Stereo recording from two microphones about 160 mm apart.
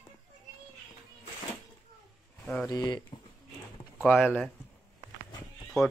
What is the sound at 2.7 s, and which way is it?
Speech, 25° left (ahead or behind).